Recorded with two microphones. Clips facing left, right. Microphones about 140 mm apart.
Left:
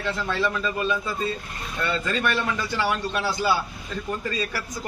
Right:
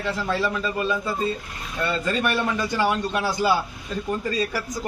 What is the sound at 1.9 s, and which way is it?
Speech, 10° right (ahead or behind).